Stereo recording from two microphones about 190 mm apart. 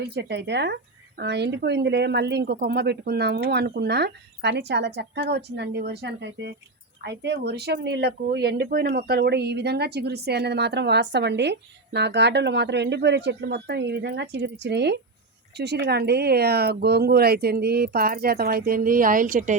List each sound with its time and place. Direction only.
0.1 s speech: 60° right (ahead or behind); by 19.5 s 45° right (ahead or behind)